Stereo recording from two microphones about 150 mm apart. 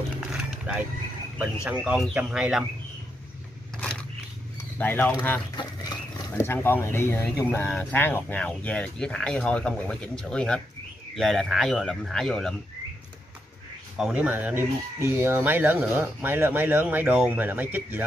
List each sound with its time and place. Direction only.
0.2 s a sound: 5° right (ahead or behind)
1.4 s speech: 10° right (ahead or behind)
3.7 s a sound: 5° left (ahead or behind)
4.7 s speech: 10° left (ahead or behind)
5.6 s pig: 25° left (ahead or behind)
6.4 s speech: 15° left (ahead or behind)
13.9 s speech: 5° right (ahead or behind)